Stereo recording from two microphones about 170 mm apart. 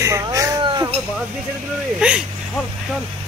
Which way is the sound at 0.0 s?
15° right (ahead or behind).